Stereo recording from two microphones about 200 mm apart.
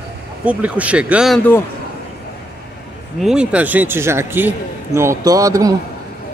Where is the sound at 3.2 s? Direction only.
5° right (ahead or behind).